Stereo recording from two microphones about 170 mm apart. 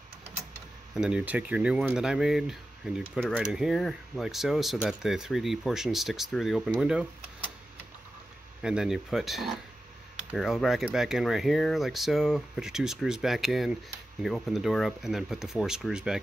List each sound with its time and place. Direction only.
0.9 s speech: 5° right (ahead or behind)
8.6 s speech: 5° right (ahead or behind)